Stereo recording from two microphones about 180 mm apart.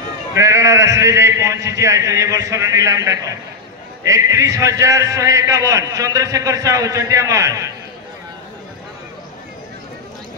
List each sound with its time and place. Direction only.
0.3 s a man's voice: 15° right (ahead or behind)